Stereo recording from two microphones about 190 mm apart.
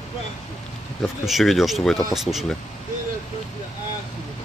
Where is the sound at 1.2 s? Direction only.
Centre (ahead or behind).